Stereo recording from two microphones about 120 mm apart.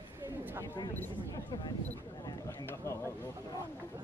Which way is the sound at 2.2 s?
25° left (ahead or behind).